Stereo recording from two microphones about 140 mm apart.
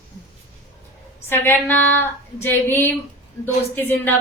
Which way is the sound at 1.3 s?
15° left (ahead or behind).